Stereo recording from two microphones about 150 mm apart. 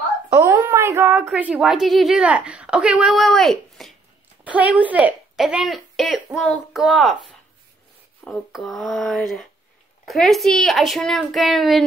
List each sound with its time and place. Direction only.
0.4 s a sound: 15° right (ahead or behind)
1.2 s a woman's voice: 10° right (ahead or behind)
4.5 s a woman's voice: 10° right (ahead or behind)